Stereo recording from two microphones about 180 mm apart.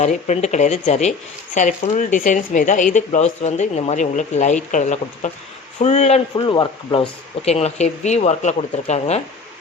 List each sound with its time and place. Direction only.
0.0 s speech: 40° left (ahead or behind)
7.4 s speech: 35° left (ahead or behind)